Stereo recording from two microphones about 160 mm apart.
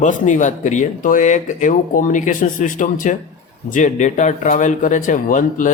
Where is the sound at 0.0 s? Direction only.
50° left (ahead or behind).